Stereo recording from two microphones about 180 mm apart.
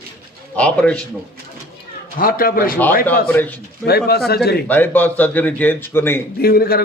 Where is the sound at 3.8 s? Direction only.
60° left (ahead or behind).